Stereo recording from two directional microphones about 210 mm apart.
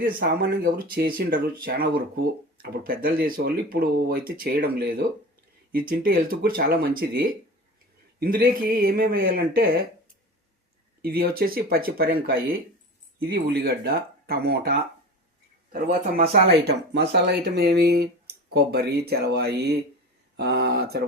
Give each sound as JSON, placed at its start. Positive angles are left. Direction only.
{"t": 0.0, "sound": "speech", "side_deg": -45}
{"t": 11.0, "sound": "speech", "side_deg": -45}